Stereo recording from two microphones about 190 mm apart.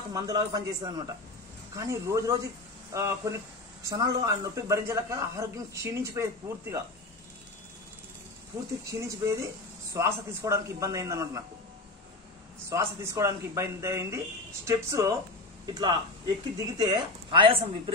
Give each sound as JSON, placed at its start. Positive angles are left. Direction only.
{"t": 0.1, "sound": "speech", "side_deg": -20}
{"t": 9.0, "sound": "speech", "side_deg": -15}
{"t": 12.6, "sound": "speech", "side_deg": -15}